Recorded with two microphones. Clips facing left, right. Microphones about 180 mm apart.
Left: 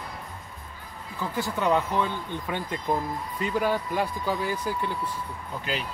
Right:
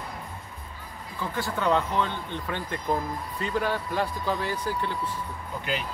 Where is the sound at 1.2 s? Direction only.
10° left (ahead or behind).